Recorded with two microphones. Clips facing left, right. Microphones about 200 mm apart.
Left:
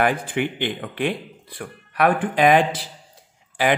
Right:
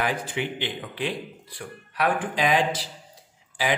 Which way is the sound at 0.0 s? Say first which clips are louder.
Left 6 dB; 55° left (ahead or behind).